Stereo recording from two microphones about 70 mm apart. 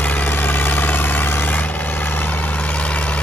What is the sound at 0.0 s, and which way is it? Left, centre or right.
Vehicle, left.